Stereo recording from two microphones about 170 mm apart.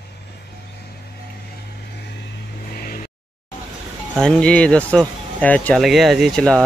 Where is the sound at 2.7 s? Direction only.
60° left (ahead or behind).